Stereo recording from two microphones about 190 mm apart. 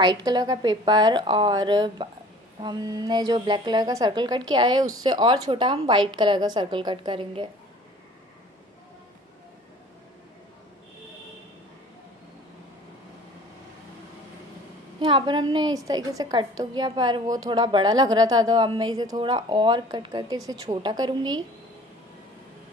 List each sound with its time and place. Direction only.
0.0 s a woman's voice: 20° right (ahead or behind)
15.0 s a woman's voice: 25° right (ahead or behind)